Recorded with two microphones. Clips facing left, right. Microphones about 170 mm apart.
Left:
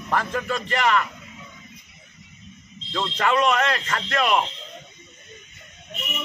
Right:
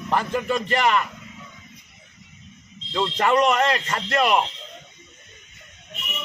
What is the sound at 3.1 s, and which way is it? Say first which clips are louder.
A man's voice: right 1 dB; 30° right (ahead or behind).